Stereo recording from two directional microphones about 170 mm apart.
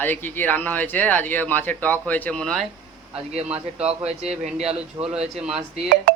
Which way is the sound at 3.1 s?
35° right (ahead or behind).